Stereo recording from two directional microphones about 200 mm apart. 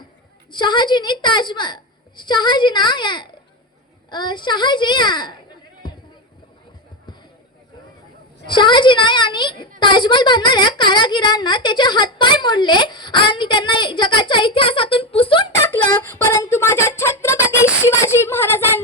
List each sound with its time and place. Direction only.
0.5 s a child's voice: 20° left (ahead or behind)
8.4 s a child's voice: 25° left (ahead or behind)
15.6 s a sound: 10° left (ahead or behind)